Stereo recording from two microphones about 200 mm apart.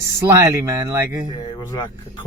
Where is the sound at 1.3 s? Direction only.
25° left (ahead or behind).